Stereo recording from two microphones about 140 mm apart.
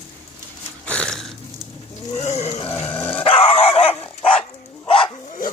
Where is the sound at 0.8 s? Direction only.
5° left (ahead or behind).